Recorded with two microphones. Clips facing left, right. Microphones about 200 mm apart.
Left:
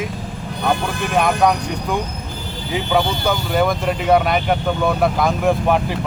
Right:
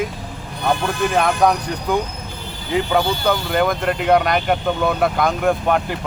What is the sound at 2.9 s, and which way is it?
Speech, centre (ahead or behind).